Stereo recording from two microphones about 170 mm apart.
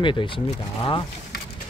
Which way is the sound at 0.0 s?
30° left (ahead or behind).